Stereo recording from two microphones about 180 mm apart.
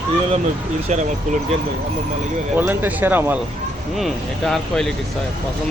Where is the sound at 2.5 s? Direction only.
10° right (ahead or behind).